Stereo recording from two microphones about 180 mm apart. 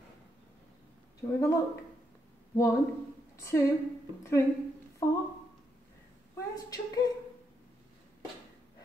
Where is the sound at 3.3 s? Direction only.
15° left (ahead or behind).